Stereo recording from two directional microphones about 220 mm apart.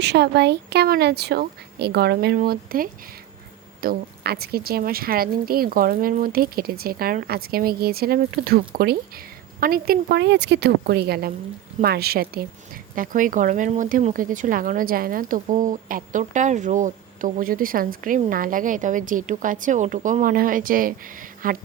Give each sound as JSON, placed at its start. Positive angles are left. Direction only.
{"t": 0.0, "sound": "speech", "side_deg": -50}